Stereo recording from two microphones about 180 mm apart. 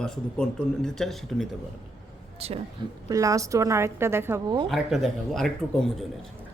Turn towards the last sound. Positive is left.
turn(degrees=5)  # may be behind; listen again after turning